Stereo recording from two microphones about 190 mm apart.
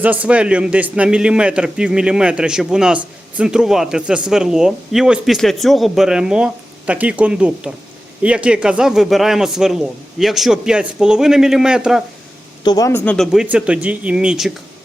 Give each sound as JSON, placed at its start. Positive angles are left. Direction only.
{"t": 0.0, "sound": "a man's voice", "side_deg": -10}
{"t": 12.6, "sound": "speech", "side_deg": 20}
{"t": 13.1, "sound": "a man's voice", "side_deg": 0}